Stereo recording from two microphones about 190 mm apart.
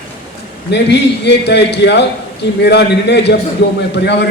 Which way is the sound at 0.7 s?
65° left (ahead or behind).